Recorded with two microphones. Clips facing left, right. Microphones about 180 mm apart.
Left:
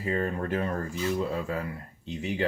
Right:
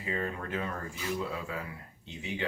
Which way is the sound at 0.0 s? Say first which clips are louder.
Left 6 dB; 40° left (ahead or behind).